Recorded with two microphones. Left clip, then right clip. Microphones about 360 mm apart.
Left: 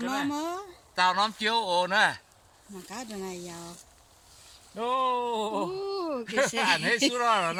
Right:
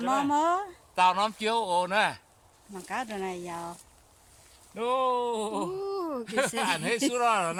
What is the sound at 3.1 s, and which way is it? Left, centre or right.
Speech, right.